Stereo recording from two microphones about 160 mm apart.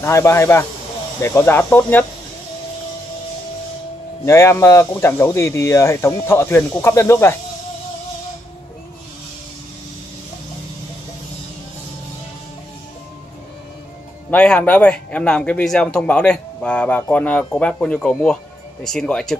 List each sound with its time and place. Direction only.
0.0 s speech: 15° left (ahead or behind)
4.2 s speech: 15° left (ahead or behind)
14.3 s speech: 5° left (ahead or behind)